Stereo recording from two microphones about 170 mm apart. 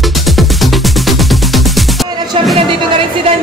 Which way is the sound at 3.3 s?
35° right (ahead or behind).